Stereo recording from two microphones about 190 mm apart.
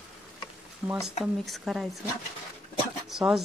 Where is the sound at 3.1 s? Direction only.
5° right (ahead or behind).